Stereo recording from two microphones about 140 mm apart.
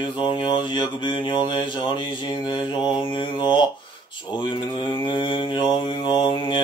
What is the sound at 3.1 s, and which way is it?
Mantra, 35° left (ahead or behind).